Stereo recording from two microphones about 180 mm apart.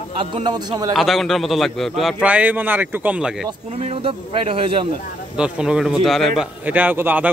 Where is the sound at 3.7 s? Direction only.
35° right (ahead or behind).